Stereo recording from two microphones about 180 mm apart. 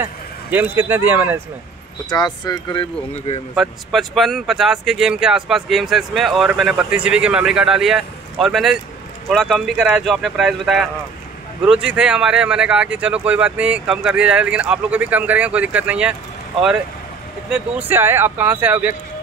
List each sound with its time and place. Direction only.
0.0 s a man's voice: 10° right (ahead or behind)
2.0 s speech: 20° left (ahead or behind)
3.5 s speech: centre (ahead or behind)
17.5 s speech: 10° right (ahead or behind)